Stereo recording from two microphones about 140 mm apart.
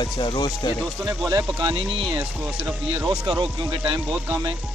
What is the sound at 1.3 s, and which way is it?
Speech, 35° right (ahead or behind).